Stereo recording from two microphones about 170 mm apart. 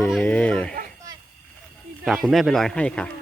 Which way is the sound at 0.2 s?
10° left (ahead or behind).